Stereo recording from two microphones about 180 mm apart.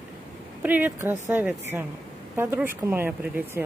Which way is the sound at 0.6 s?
10° right (ahead or behind).